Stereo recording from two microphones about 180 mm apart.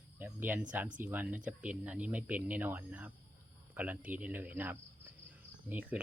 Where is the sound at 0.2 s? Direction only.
10° right (ahead or behind).